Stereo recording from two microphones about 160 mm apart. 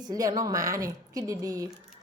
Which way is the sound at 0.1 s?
20° right (ahead or behind).